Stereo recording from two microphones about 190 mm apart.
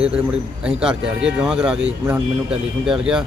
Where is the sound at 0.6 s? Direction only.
5° right (ahead or behind).